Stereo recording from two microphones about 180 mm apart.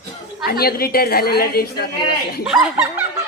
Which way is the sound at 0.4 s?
60° left (ahead or behind).